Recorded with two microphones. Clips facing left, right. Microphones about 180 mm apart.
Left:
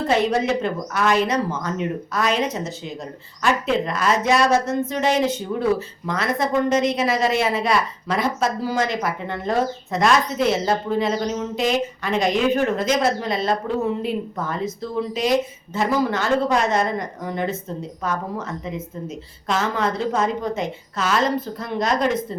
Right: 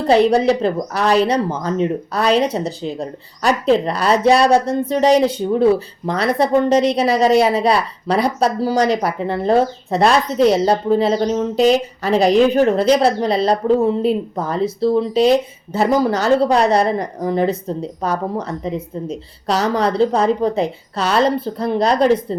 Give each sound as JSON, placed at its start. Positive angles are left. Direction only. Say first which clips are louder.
{"t": 0.0, "sound": "a woman's voice", "louder": "right 7 dB", "side_deg": -35}